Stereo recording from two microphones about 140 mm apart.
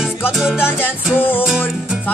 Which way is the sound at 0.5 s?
15° left (ahead or behind).